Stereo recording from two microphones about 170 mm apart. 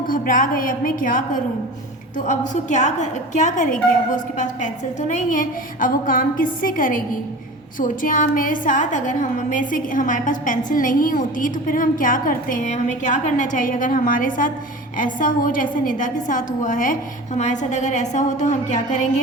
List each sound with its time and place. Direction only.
0.1 s a woman's voice: 55° left (ahead or behind)